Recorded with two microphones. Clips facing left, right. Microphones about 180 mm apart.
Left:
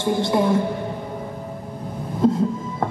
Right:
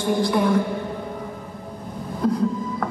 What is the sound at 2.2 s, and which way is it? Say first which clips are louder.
Music: left 4 dB; 25° left (ahead or behind).